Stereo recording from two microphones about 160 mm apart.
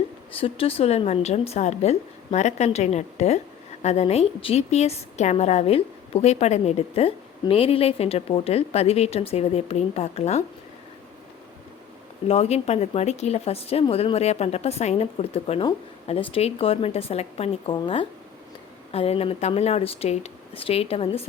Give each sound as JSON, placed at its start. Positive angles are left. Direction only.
{"t": 0.3, "sound": "a woman's voice", "side_deg": 35}
{"t": 12.3, "sound": "a woman's voice", "side_deg": 40}